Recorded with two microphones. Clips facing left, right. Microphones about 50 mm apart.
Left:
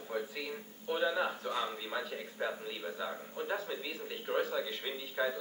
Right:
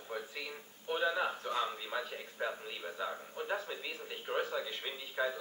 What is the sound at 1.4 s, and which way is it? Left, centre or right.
Speech, right.